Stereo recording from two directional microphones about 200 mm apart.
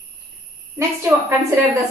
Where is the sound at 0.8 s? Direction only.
15° right (ahead or behind).